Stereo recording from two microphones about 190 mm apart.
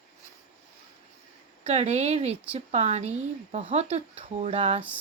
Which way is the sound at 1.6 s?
35° right (ahead or behind).